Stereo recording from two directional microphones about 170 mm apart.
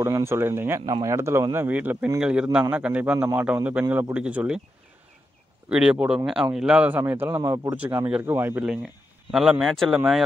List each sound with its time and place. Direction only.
0.0 s speech: 15° right (ahead or behind)
5.7 s speech: 5° right (ahead or behind)